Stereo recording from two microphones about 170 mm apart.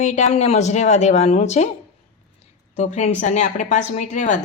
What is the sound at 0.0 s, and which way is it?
Speech, 45° left (ahead or behind).